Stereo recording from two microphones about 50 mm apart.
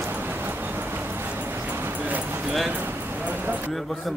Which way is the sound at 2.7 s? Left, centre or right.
Right.